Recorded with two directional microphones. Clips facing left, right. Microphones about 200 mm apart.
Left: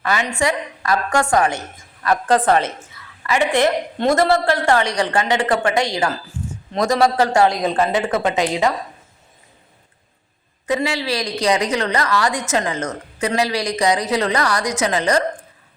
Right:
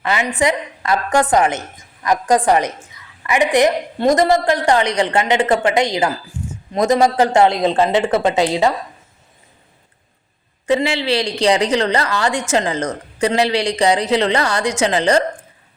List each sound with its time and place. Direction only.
0.0 s a woman's voice: 20° right (ahead or behind)
10.7 s a woman's voice: 25° right (ahead or behind)